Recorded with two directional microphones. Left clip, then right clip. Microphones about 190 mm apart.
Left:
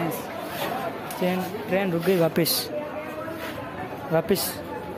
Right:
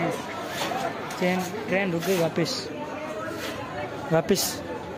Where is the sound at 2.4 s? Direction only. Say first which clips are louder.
Left 3 dB; 35° left (ahead or behind).